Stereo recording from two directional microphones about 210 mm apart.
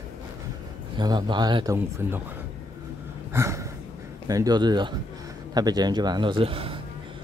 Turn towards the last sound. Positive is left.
turn(degrees=-25)  # may be behind; listen again after turning